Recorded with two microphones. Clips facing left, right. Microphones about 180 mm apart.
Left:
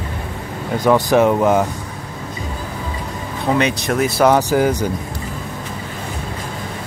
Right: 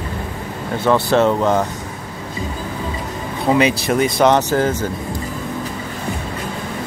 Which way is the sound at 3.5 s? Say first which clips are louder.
Right 2 dB; 5° right (ahead or behind).